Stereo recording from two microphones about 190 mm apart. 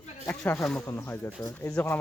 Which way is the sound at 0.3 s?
10° left (ahead or behind).